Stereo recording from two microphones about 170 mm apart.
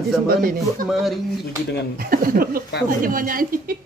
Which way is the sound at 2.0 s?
55° right (ahead or behind).